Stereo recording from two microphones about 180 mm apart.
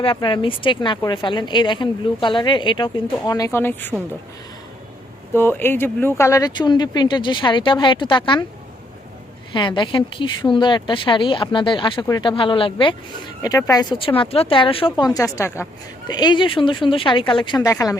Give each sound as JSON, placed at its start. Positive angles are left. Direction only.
{"t": 0.0, "sound": "a woman's voice", "side_deg": 30}
{"t": 5.3, "sound": "a woman's voice", "side_deg": 10}
{"t": 9.5, "sound": "a woman's voice", "side_deg": 25}